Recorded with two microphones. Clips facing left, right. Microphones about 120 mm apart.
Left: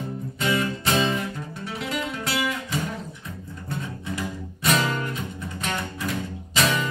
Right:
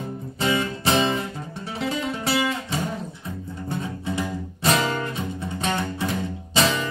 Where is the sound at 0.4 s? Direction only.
30° right (ahead or behind).